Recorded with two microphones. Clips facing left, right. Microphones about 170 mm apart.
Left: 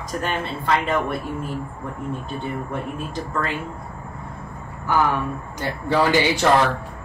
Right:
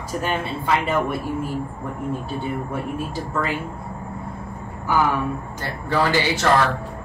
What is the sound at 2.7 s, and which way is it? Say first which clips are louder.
Speech: right 1 dB; 5° right (ahead or behind).